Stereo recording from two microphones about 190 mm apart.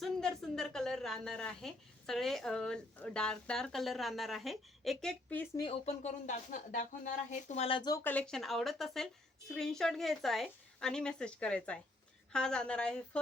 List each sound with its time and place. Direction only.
0.0 s a woman's voice: centre (ahead or behind)
5.8 s a woman's voice: 35° left (ahead or behind); by 13.0 s 5° left (ahead or behind)